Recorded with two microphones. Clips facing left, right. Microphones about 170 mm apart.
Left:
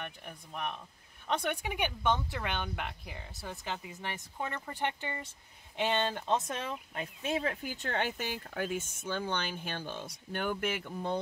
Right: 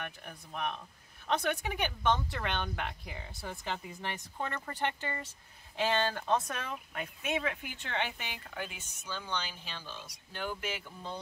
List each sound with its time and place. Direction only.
0.2 s speech: 10° left (ahead or behind); by 11.1 s 55° left (ahead or behind)